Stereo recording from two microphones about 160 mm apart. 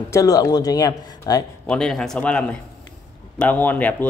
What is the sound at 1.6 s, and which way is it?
Speech, 5° left (ahead or behind).